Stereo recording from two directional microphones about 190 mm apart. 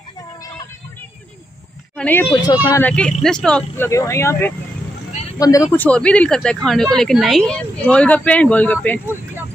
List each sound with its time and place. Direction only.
2.0 s speech: 10° left (ahead or behind)
2.3 s speech: 20° left (ahead or behind)
2.8 s speech: 5° left (ahead or behind)